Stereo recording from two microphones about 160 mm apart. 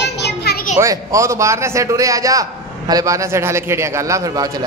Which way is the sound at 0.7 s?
20° right (ahead or behind).